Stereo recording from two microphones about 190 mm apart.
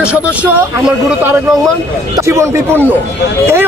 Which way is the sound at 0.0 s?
5° right (ahead or behind).